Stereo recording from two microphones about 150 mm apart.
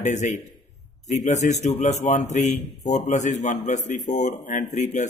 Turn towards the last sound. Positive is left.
turn(degrees=50)  # may be behind; listen again after turning